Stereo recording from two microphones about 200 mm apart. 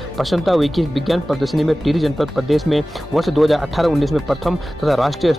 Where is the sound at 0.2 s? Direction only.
Centre (ahead or behind).